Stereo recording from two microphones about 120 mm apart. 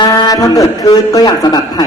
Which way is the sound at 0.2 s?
30° left (ahead or behind).